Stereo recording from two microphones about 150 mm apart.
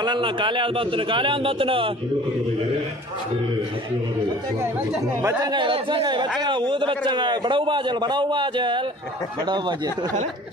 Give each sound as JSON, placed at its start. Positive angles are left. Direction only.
{"t": 0.0, "sound": "a man's voice", "side_deg": -30}
{"t": 5.4, "sound": "a man's voice", "side_deg": -30}